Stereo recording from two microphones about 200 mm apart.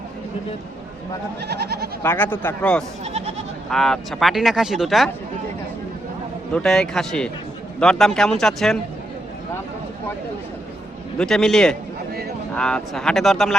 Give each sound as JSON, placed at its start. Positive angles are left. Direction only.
{"t": 1.4, "sound": "goat", "side_deg": -55}
{"t": 2.0, "sound": "a man's voice", "side_deg": 10}
{"t": 3.0, "sound": "goat", "side_deg": -30}
{"t": 3.7, "sound": "speech", "side_deg": 0}
{"t": 6.5, "sound": "speech", "side_deg": 5}
{"t": 11.2, "sound": "speech", "side_deg": 5}